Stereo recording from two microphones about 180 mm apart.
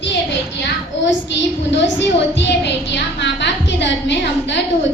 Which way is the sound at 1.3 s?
80° left.